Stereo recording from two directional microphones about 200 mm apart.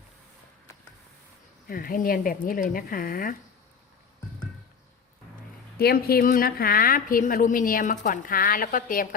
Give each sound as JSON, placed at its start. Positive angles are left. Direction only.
{"t": 1.6, "sound": "a woman's voice", "side_deg": 45}
{"t": 5.8, "sound": "a woman's voice", "side_deg": 50}